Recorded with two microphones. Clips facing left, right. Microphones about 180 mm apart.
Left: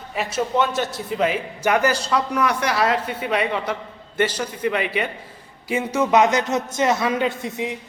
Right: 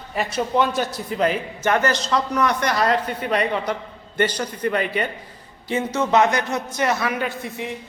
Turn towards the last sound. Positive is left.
turn(degrees=20)  # may be behind; listen again after turning